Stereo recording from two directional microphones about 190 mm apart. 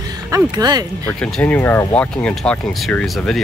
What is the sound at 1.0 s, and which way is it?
Speech, 5° left (ahead or behind).